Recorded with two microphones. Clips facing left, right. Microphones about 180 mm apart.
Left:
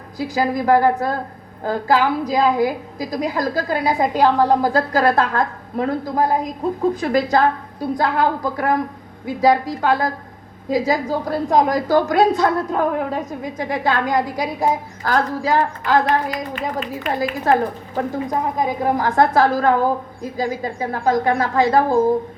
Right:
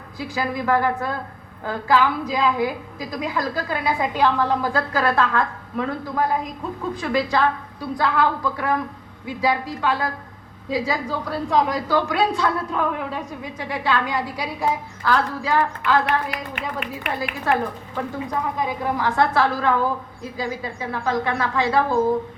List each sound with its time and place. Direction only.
0.2 s a woman's voice: 40° left (ahead or behind)
16.6 s a woman's voice: 65° right (ahead or behind)
17.5 s a woman's voice: 40° left (ahead or behind)